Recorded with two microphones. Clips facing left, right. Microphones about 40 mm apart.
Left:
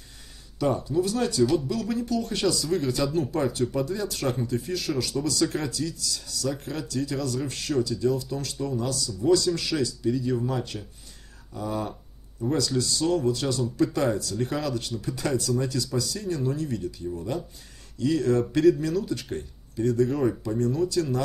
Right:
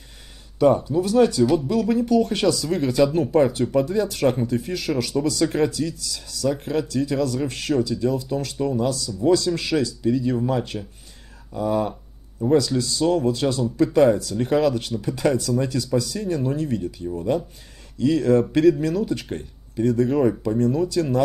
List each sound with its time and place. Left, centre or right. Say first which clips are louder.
0.6 s speech: right 7 dB; right
1.4 s speech: right 3 dB; centre
1.7 s speech: right 8 dB; right
11.9 s a sound: right 3 dB; right
13.1 s speech: right 4 dB; right